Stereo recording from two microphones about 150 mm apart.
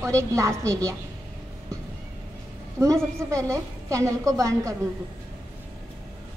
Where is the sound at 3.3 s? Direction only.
20° right (ahead or behind).